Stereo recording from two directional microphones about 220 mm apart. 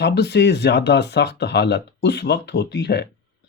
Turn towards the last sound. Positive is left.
turn(degrees=50)  # may be behind; listen again after turning